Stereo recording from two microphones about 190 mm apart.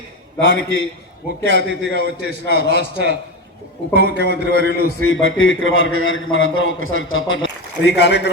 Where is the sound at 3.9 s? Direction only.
65° right (ahead or behind).